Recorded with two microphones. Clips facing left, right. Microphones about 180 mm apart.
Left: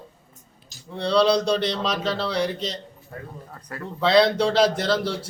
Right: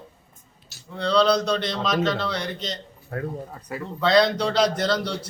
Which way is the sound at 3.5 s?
10° right (ahead or behind).